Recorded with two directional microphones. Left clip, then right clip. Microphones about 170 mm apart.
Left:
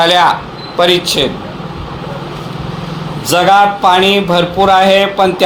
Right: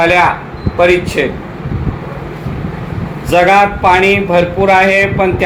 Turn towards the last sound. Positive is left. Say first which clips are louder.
# left 1 dB
turn(degrees=45)  # may be behind; listen again after turning